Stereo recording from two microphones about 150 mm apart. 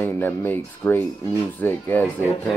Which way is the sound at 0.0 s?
15° left (ahead or behind).